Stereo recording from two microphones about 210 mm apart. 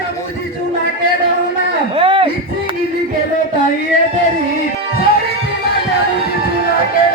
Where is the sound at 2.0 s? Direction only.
25° right (ahead or behind).